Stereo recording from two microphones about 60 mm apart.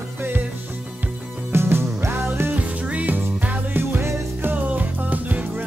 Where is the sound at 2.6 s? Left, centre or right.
Right.